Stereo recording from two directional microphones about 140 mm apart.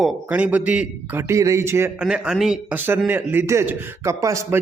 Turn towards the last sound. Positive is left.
turn(degrees=-20)  # may be behind; listen again after turning